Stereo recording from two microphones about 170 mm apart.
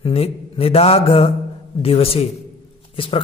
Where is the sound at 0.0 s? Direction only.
35° left (ahead or behind).